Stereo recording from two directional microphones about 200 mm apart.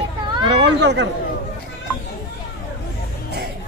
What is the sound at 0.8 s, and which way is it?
Chatter, 60° right (ahead or behind).